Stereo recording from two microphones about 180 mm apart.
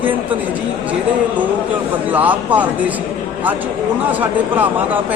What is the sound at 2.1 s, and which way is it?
Speech, 10° right (ahead or behind).